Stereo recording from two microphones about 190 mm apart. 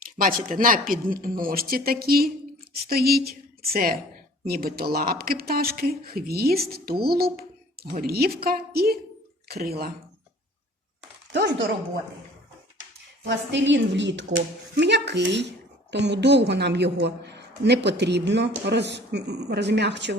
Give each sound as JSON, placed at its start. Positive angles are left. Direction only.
{"t": 0.2, "sound": "a woman's voice", "side_deg": -45}
{"t": 11.3, "sound": "speech", "side_deg": -65}
{"t": 13.2, "sound": "a woman's voice", "side_deg": -70}